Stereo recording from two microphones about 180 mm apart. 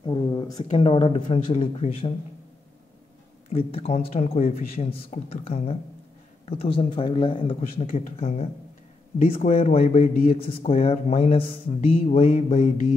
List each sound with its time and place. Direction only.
0.0 s speech: 25° left (ahead or behind)
0.7 s a man's voice: 35° left (ahead or behind)
3.4 s a man's voice: 35° left (ahead or behind)
9.5 s a man's voice: 35° left (ahead or behind)
10.3 s a man's voice: 30° left (ahead or behind)